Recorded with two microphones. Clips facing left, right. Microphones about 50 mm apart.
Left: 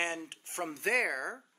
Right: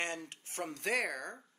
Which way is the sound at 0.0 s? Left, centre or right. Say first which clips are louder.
Left 3 dB; left.